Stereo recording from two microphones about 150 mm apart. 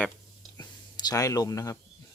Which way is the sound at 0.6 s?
25° left (ahead or behind).